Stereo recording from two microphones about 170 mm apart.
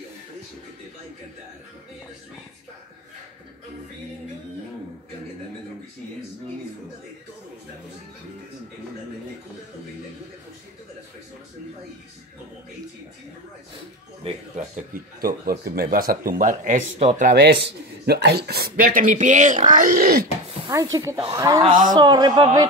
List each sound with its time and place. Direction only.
14.2 s speech: 40° right (ahead or behind)
15.1 s speech: 60° right (ahead or behind)
18.0 s speech: 70° right (ahead or behind)
20.7 s speech: 20° right (ahead or behind)